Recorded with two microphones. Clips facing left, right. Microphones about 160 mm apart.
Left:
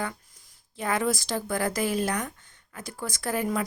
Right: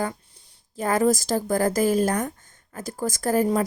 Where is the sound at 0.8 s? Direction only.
40° right (ahead or behind).